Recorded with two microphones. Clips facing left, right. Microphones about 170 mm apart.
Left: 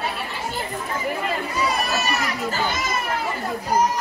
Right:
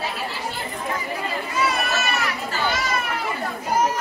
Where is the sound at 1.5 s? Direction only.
35° left (ahead or behind).